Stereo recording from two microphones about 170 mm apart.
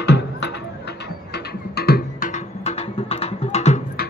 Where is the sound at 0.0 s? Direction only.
85° left; by 3.8 s 40° left (ahead or behind).